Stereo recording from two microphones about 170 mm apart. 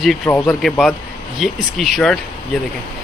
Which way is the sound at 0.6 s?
Centre (ahead or behind).